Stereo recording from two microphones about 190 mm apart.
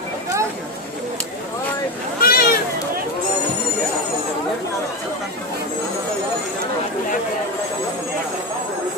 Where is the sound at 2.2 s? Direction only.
50° left (ahead or behind).